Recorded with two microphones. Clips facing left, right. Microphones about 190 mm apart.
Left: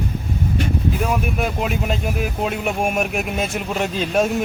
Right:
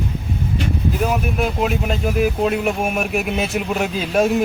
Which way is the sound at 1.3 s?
Centre (ahead or behind).